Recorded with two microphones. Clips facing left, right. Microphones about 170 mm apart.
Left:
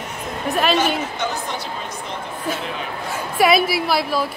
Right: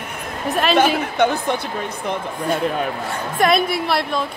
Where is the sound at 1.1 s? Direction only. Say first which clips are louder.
Right 7 dB; 60° right (ahead or behind).